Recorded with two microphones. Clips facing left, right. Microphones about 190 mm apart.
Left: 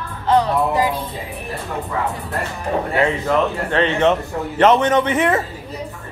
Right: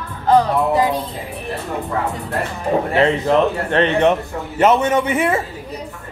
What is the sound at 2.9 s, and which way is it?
A man's voice, 20° right (ahead or behind).